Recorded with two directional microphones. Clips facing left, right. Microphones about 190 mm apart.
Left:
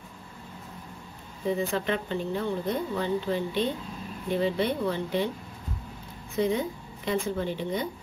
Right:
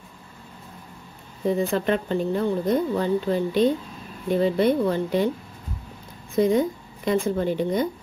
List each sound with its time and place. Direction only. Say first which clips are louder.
1.7 s speech: right 6 dB; 45° right (ahead or behind)
6.3 s speech: right 7 dB; 45° right (ahead or behind)